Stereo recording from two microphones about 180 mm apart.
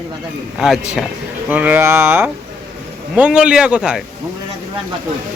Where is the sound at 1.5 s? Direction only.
10° right (ahead or behind).